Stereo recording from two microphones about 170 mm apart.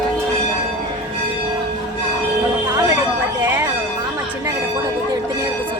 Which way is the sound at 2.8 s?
20° right (ahead or behind).